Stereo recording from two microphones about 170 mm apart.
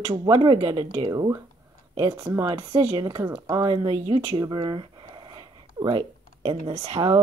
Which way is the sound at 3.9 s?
40° right (ahead or behind).